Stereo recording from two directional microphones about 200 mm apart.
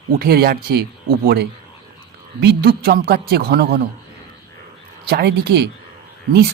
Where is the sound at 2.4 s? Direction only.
55° right (ahead or behind).